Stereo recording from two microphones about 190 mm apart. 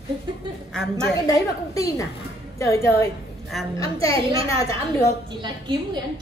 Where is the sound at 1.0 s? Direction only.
20° left (ahead or behind).